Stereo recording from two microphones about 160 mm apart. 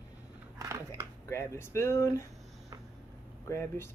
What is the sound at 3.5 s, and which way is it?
Speech, 15° left (ahead or behind).